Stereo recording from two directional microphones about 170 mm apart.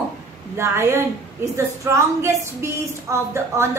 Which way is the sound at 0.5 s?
15° right (ahead or behind).